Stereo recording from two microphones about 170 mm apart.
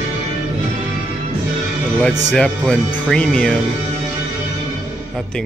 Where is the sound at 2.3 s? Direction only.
5° left (ahead or behind).